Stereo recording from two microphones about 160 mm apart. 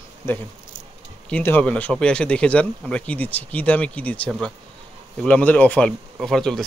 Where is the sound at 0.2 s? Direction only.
15° left (ahead or behind).